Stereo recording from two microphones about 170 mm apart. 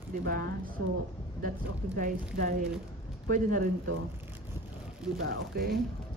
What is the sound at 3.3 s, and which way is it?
Speech, 55° right (ahead or behind).